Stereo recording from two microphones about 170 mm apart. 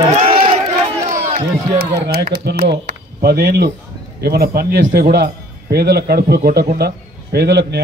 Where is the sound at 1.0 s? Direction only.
45° right (ahead or behind).